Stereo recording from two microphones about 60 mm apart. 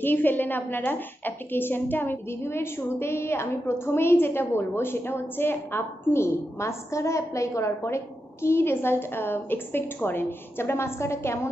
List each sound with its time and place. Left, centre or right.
0.0 s a woman's voice: left